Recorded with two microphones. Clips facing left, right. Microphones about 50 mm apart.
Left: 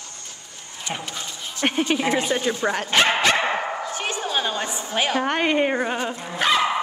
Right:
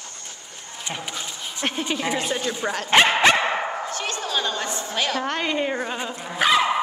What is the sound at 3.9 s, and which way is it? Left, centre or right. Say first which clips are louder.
A woman's voice: left 1 dB; centre.